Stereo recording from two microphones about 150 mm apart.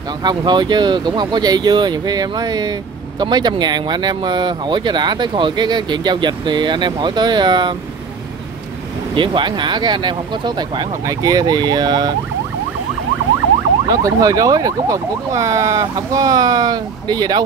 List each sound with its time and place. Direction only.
0.2 s speech: 30° right (ahead or behind)
9.1 s speech: 35° right (ahead or behind)
13.8 s speech: 25° right (ahead or behind)